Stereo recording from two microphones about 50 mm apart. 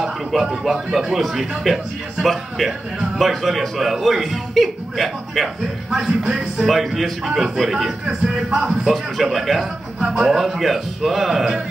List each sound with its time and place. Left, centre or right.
0.0 s a man's voice: centre
9.9 s a man's voice: centre
10.2 s a man's voice: centre